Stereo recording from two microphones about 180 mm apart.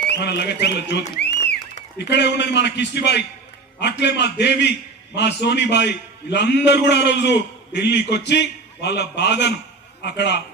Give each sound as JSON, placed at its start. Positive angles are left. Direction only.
{"t": 0.1, "sound": "a man's voice", "side_deg": 70}
{"t": 1.2, "sound": "a sound", "side_deg": 70}
{"t": 2.0, "sound": "a man's voice", "side_deg": 70}